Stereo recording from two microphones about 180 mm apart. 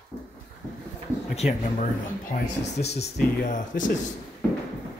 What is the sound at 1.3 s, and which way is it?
Speech, 35° left (ahead or behind).